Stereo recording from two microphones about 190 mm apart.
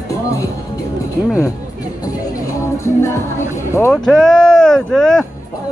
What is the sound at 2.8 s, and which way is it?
Music, 15° left (ahead or behind).